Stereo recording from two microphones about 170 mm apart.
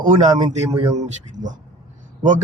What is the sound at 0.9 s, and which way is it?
Speech, 45° right (ahead or behind).